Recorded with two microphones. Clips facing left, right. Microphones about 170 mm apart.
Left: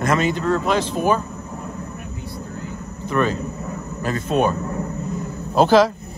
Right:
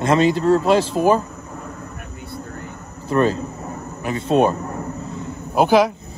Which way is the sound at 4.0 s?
15° right (ahead or behind).